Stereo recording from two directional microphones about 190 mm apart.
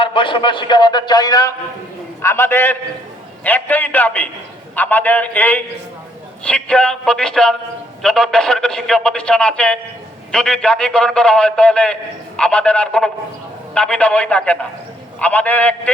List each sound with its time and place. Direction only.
0.0 s a man's voice: 25° left (ahead or behind); by 15.9 s 10° left (ahead or behind)